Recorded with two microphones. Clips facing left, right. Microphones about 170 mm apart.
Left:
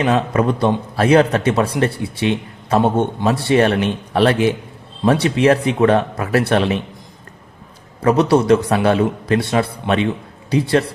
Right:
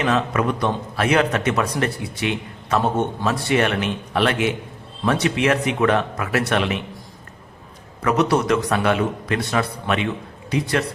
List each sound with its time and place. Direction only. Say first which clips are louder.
0.0 s a man's voice: left 4 dB; 35° left (ahead or behind)
8.0 s a man's voice: left 5 dB; 30° left (ahead or behind)